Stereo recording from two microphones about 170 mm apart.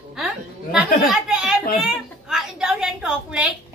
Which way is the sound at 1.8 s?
5° right (ahead or behind).